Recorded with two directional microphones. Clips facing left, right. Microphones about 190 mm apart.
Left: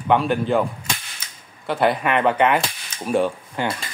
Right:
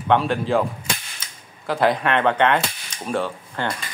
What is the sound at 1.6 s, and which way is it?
Cap gun, centre (ahead or behind).